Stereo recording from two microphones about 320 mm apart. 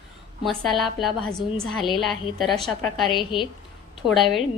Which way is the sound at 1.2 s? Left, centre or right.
Right.